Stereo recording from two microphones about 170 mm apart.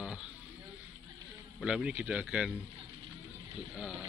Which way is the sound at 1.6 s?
5° right (ahead or behind).